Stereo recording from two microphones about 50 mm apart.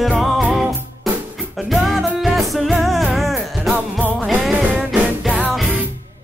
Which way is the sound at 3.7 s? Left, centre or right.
Right.